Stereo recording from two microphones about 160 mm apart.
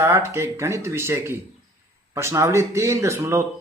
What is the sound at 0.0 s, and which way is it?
Speech, 15° right (ahead or behind).